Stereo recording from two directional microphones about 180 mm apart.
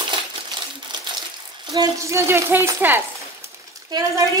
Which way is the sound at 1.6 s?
20° right (ahead or behind).